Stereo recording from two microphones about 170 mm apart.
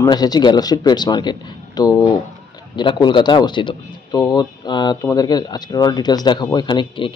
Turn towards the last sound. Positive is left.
turn(degrees=30)  # may be behind; listen again after turning